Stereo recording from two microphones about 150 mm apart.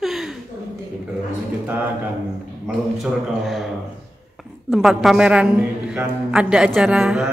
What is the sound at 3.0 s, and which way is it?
A man's voice, centre (ahead or behind).